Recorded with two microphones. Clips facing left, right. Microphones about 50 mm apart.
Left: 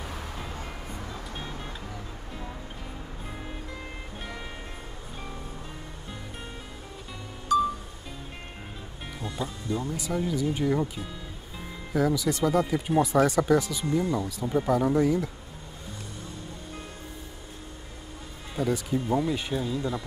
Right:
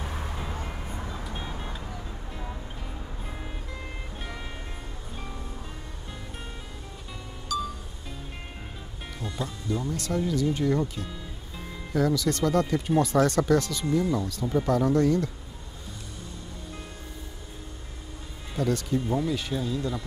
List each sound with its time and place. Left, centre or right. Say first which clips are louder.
0.0 s music: right 2 dB; centre
7.5 s music: left 7 dB; left
9.2 s speech: even; centre
18.6 s speech: right 1 dB; centre